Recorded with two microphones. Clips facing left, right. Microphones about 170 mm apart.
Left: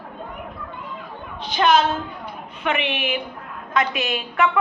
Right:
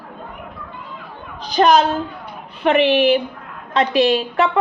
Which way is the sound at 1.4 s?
40° right (ahead or behind).